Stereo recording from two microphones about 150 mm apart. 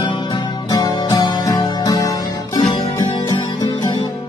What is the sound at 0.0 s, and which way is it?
Music, 30° left (ahead or behind).